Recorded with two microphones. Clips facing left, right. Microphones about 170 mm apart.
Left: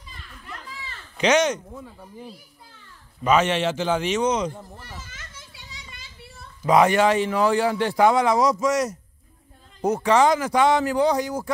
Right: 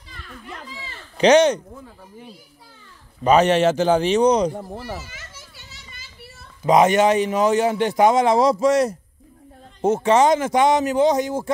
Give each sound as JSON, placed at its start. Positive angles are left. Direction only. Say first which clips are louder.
{"t": 1.1, "sound": "speech", "louder": "right 6 dB", "side_deg": -35}
{"t": 3.3, "sound": "a man's voice", "louder": "right 5 dB", "side_deg": -40}
{"t": 4.7, "sound": "a child's voice", "louder": "right 10 dB", "side_deg": -90}
{"t": 5.0, "sound": "children playing", "louder": "right 3 dB", "side_deg": -10}
{"t": 6.6, "sound": "a man's voice", "louder": "right 2 dB", "side_deg": -20}